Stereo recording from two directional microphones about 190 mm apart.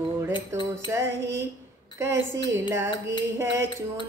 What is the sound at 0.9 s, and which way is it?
Music, 15° right (ahead or behind).